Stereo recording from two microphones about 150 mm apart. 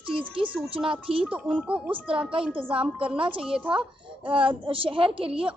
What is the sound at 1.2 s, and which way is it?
Speech, 10° right (ahead or behind).